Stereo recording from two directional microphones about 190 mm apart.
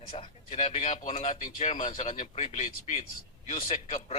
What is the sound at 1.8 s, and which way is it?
A man's voice, 40° left (ahead or behind).